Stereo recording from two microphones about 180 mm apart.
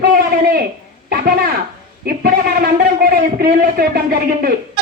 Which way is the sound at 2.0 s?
60° right (ahead or behind).